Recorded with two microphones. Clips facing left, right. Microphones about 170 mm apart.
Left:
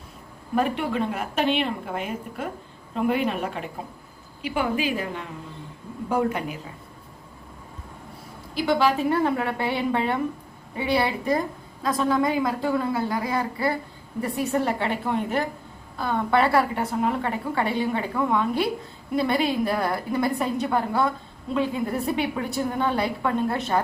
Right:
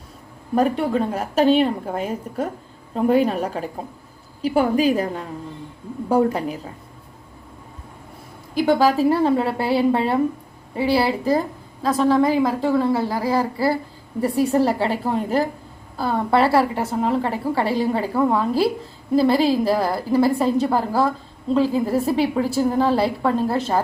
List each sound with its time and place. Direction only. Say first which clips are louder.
0.5 s a woman's voice: right 5 dB; 35° right (ahead or behind)
8.5 s a woman's voice: right 5 dB; 40° right (ahead or behind)